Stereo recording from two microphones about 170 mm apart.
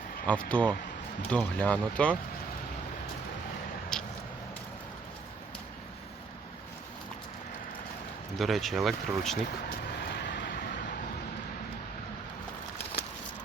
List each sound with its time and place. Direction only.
0.3 s speech: 5° left (ahead or behind)
3.9 s a sound: 5° left (ahead or behind)
8.4 s speech: centre (ahead or behind)
9.6 s vehicle: 75° left (ahead or behind)